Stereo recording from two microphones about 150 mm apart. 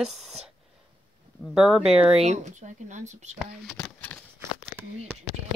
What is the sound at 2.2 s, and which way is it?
Speech, 50° right (ahead or behind).